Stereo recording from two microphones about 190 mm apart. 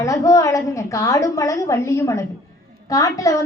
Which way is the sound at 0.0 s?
15° left (ahead or behind).